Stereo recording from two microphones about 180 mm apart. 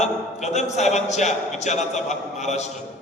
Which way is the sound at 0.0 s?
40° left (ahead or behind).